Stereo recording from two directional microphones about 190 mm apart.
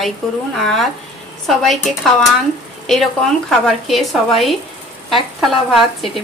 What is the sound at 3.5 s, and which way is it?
A woman's voice, centre (ahead or behind).